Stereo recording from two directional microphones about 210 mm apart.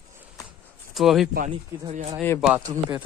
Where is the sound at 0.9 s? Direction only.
Centre (ahead or behind).